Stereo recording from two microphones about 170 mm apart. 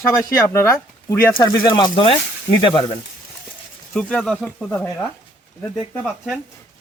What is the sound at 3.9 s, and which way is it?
Speech, 5° left (ahead or behind).